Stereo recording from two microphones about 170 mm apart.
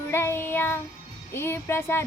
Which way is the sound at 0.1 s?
15° left (ahead or behind).